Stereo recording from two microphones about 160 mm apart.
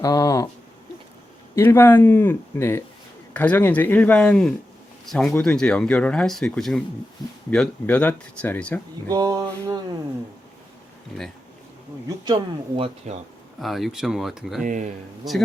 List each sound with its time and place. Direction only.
0.0 s speech: 20° left (ahead or behind)
1.5 s speech: 15° left (ahead or behind)
9.0 s music: 25° right (ahead or behind)
12.0 s speech: 25° right (ahead or behind)
13.6 s speech: centre (ahead or behind)
14.6 s speech: 50° right (ahead or behind)
15.2 s speech: centre (ahead or behind)